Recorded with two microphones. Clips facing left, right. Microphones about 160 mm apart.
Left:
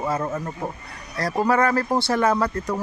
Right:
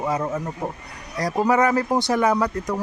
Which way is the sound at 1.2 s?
15° right (ahead or behind).